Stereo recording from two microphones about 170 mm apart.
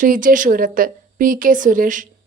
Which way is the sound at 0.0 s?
50° right (ahead or behind).